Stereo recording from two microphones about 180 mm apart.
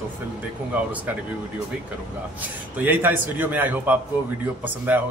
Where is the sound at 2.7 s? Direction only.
10° right (ahead or behind).